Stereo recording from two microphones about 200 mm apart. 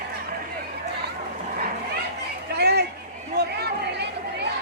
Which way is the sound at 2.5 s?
55° right (ahead or behind).